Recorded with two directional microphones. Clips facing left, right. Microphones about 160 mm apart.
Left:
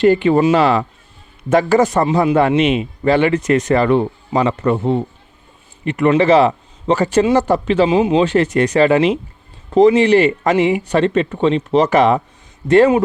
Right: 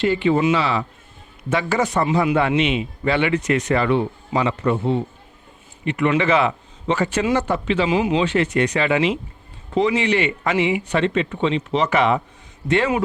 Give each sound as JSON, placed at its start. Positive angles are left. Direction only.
{"t": 0.0, "sound": "a man's voice", "side_deg": 50}
{"t": 8.2, "sound": "a man's voice", "side_deg": 40}